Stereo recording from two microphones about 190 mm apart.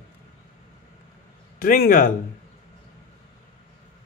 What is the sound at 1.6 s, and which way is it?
Speech, 45° left (ahead or behind).